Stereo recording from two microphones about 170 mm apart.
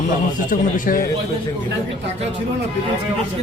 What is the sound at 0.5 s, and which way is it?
Speech, 55° left (ahead or behind).